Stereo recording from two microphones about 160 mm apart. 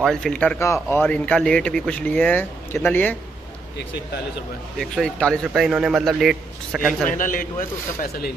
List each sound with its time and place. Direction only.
0.0 s a man's voice: 5° left (ahead or behind)
4.7 s a man's voice: 5° left (ahead or behind)
7.1 s speech: 55° left (ahead or behind)